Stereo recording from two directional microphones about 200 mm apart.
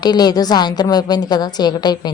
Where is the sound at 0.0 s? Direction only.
20° left (ahead or behind).